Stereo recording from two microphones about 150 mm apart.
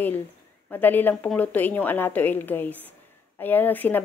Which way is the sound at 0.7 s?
10° left (ahead or behind).